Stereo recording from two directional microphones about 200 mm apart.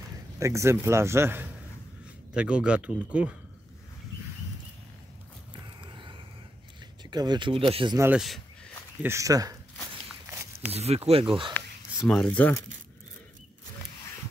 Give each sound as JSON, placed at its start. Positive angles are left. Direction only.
{"t": 0.4, "sound": "a man's voice", "side_deg": -15}
{"t": 5.8, "sound": "a sound", "side_deg": -25}
{"t": 7.1, "sound": "speech", "side_deg": -20}
{"t": 8.0, "sound": "speech", "side_deg": -5}
{"t": 9.0, "sound": "a man's voice", "side_deg": -15}
{"t": 10.7, "sound": "speech", "side_deg": -30}
{"t": 12.0, "sound": "speech", "side_deg": 5}